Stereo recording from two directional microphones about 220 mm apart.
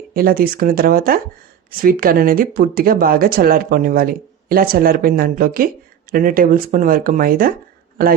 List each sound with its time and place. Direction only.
0.1 s speech: 40° right (ahead or behind)